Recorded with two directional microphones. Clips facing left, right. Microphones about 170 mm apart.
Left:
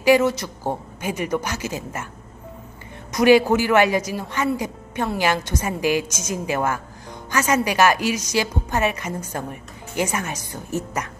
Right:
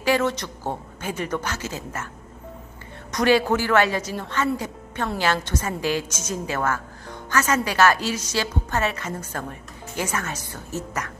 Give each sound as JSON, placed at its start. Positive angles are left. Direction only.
{"t": 0.0, "sound": "a woman's voice", "side_deg": 10}
{"t": 3.1, "sound": "a woman's voice", "side_deg": 10}